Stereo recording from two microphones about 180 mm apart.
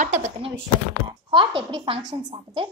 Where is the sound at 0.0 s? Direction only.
40° right (ahead or behind).